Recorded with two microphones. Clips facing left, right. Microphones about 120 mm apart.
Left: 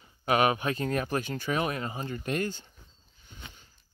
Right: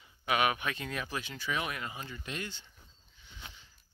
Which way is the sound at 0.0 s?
40° left (ahead or behind).